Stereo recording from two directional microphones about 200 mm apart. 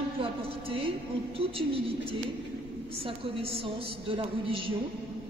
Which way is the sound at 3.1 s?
25° right (ahead or behind).